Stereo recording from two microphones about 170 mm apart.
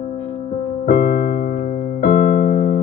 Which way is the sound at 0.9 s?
50° left (ahead or behind).